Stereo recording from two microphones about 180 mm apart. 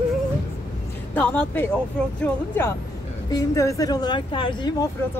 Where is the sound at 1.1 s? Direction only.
10° left (ahead or behind).